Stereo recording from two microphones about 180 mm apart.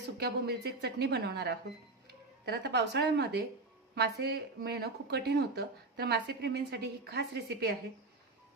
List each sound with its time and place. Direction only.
0.2 s speech: 65° right (ahead or behind)